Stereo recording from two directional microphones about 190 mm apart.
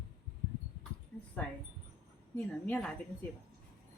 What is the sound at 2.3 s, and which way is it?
Speech, 5° left (ahead or behind).